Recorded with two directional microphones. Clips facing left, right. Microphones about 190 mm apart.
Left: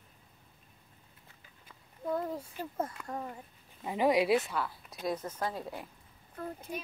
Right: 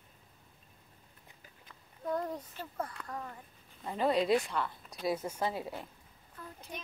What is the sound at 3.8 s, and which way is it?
Speech, 10° left (ahead or behind).